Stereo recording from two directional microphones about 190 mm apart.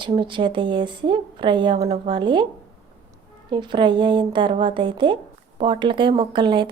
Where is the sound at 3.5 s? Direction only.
25° right (ahead or behind).